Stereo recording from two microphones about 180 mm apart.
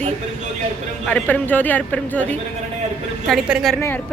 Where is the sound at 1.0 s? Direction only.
10° left (ahead or behind).